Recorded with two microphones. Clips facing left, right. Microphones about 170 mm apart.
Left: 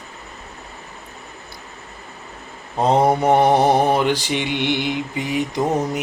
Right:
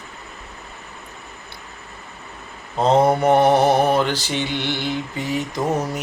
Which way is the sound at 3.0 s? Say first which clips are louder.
Even; 10° left (ahead or behind).